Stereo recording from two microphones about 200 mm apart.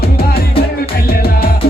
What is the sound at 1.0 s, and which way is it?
Music, 50° left (ahead or behind).